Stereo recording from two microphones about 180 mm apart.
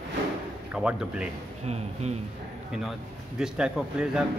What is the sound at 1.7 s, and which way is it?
Speech, 35° right (ahead or behind).